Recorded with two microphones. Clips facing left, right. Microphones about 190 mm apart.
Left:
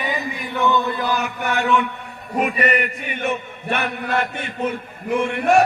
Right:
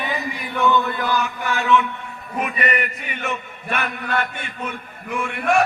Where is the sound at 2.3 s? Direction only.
40° left (ahead or behind).